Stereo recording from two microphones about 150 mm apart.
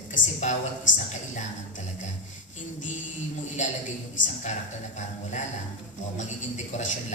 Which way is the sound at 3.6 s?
55° left (ahead or behind).